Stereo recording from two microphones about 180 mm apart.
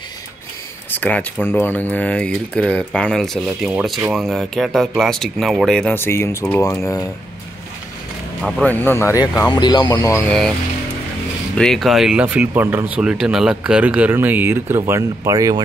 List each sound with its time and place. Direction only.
0.9 s speech: 10° left (ahead or behind)
8.4 s speech: centre (ahead or behind); by 10.2 s 20° left (ahead or behind)
11.5 s speech: centre (ahead or behind); by 15.6 s 20° right (ahead or behind)